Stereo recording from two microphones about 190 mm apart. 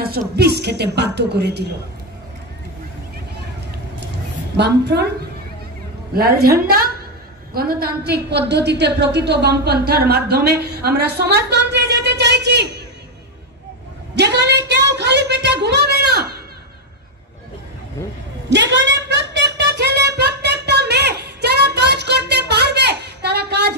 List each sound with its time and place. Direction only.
0.0 s a woman's voice: 55° right (ahead or behind)
4.6 s a woman's voice: 60° right (ahead or behind)
6.1 s a woman's voice: 55° right (ahead or behind)
14.1 s a sound: 65° right (ahead or behind)
18.5 s music: 65° right (ahead or behind)